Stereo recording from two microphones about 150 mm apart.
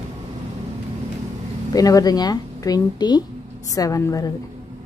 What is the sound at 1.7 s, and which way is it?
Speech, 25° left (ahead or behind).